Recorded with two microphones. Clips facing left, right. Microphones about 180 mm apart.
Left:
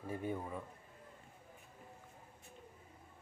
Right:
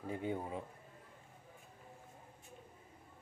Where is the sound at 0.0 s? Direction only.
20° right (ahead or behind).